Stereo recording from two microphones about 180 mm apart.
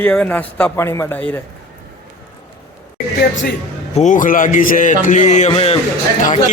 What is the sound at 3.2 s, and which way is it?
Speech, 65° left (ahead or behind).